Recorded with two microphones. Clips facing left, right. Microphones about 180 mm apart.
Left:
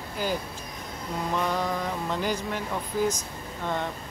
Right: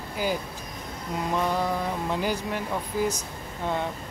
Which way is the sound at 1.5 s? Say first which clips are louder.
Right 2 dB; 10° right (ahead or behind).